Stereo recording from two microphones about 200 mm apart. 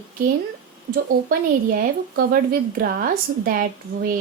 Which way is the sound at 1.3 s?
45° right (ahead or behind).